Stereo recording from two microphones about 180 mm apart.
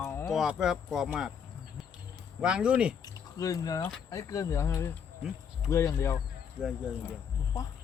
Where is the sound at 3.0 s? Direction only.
20° left (ahead or behind).